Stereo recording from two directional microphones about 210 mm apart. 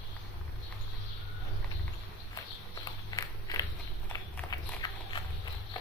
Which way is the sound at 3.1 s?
15° left (ahead or behind).